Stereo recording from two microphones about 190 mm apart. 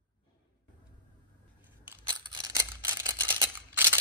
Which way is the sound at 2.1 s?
20° right (ahead or behind).